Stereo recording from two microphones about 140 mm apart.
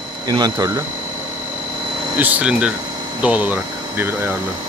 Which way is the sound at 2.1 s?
10° right (ahead or behind).